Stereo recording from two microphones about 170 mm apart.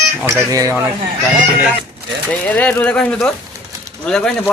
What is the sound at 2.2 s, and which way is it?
Speech, 10° left (ahead or behind).